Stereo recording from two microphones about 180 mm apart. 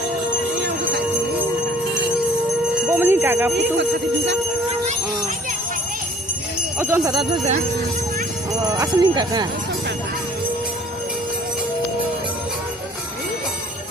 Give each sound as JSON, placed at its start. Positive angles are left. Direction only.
{"t": 2.9, "sound": "jingle bell", "side_deg": -10}
{"t": 6.7, "sound": "speech", "side_deg": -15}
{"t": 8.6, "sound": "speech", "side_deg": -20}